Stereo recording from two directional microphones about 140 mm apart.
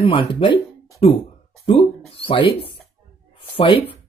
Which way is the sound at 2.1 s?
40° left (ahead or behind).